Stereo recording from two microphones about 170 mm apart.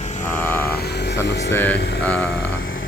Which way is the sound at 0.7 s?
80° left.